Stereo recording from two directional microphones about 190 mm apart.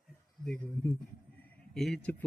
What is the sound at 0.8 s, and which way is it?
Speech, 15° left (ahead or behind).